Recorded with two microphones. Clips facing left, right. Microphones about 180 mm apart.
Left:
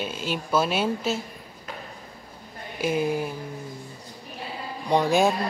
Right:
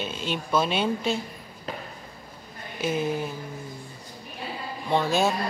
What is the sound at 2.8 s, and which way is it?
Speech, 10° left (ahead or behind).